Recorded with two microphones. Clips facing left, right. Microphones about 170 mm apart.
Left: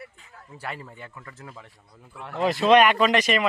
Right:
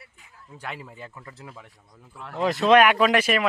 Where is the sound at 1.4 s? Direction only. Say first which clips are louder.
Even; 10° right (ahead or behind).